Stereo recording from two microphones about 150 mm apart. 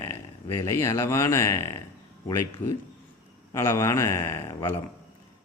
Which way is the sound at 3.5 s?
20° left (ahead or behind).